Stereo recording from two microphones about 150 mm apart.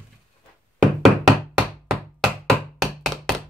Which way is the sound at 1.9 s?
Centre (ahead or behind).